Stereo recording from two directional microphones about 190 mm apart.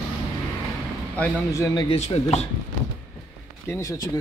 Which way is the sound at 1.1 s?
10° left (ahead or behind).